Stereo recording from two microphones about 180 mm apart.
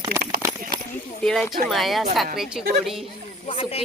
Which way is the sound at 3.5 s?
30° left (ahead or behind).